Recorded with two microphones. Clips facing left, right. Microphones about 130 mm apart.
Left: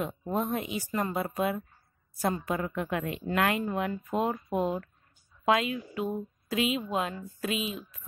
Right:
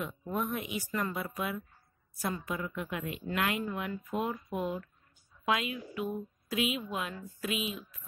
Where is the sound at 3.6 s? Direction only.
35° left (ahead or behind).